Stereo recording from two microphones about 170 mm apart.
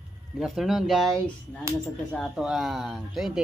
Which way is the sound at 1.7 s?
15° right (ahead or behind).